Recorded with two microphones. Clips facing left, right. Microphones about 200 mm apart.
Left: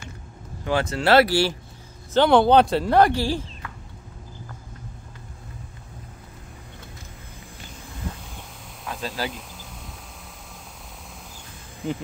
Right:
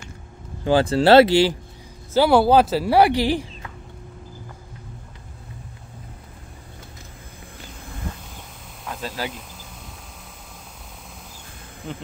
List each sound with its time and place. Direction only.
0.7 s speech: 30° right (ahead or behind)
2.1 s speech: 5° right (ahead or behind)
8.8 s a sound: centre (ahead or behind)